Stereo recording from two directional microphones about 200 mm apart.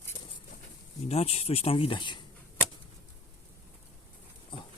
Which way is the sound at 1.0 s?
30° left (ahead or behind).